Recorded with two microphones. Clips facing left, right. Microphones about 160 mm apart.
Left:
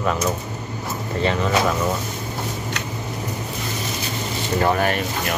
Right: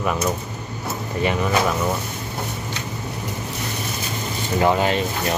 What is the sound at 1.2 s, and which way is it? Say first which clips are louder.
Speech: even; 15° right (ahead or behind).